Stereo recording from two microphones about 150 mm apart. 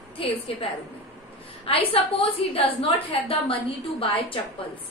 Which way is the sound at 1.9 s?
40° left (ahead or behind).